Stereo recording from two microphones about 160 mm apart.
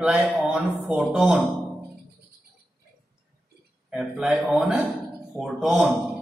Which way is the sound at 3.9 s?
5° right (ahead or behind).